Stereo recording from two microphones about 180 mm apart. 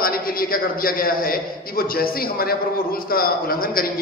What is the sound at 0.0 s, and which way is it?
A man's voice, 55° left (ahead or behind).